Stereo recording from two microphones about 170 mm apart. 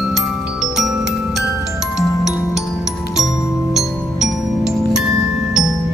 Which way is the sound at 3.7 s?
5° right (ahead or behind).